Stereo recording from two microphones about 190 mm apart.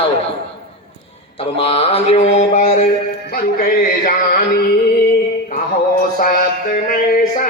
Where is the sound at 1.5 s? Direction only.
30° left (ahead or behind).